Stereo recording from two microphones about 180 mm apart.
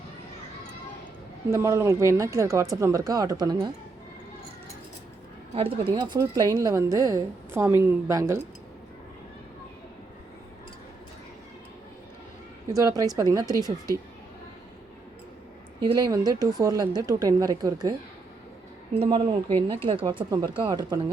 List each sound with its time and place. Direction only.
1.5 s speech: 15° right (ahead or behind)
5.5 s speech: 30° right (ahead or behind); by 8.4 s 15° right (ahead or behind)
12.7 s a woman's voice: 20° right (ahead or behind)
15.8 s a woman's voice: 20° right (ahead or behind)
18.9 s a woman's voice: 30° right (ahead or behind)